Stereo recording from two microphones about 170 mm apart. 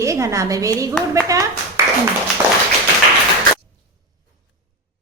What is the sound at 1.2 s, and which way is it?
Clapping, 20° right (ahead or behind).